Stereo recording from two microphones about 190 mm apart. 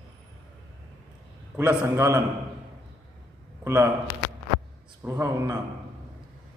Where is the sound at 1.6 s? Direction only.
15° right (ahead or behind).